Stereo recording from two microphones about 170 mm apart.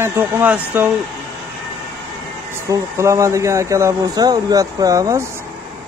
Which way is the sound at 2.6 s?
15° right (ahead or behind).